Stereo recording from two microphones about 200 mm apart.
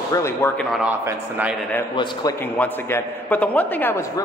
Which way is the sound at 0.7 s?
5° right (ahead or behind).